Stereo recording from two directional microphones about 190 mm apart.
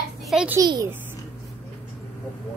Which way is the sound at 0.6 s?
20° right (ahead or behind).